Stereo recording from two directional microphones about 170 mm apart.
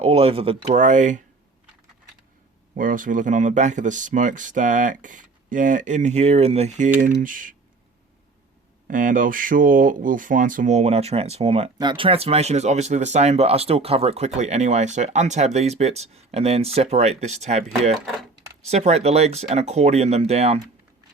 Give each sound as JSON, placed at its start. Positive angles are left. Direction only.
{"t": 0.0, "sound": "speech", "side_deg": -35}
{"t": 2.7, "sound": "speech", "side_deg": -50}
{"t": 8.9, "sound": "speech", "side_deg": -50}
{"t": 18.7, "sound": "speech", "side_deg": -40}